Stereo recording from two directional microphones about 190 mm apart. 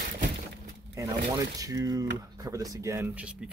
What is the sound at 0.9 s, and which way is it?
Speech, 15° right (ahead or behind).